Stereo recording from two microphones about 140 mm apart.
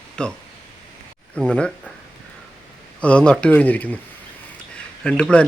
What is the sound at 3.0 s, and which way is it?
Speech, 10° left (ahead or behind).